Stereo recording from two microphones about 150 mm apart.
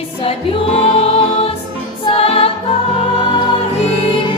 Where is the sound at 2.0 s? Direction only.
40° left (ahead or behind).